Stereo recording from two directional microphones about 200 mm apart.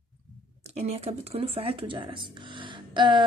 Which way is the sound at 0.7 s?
30° right (ahead or behind).